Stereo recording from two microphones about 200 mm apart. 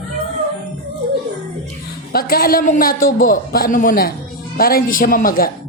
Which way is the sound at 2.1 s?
50° left (ahead or behind).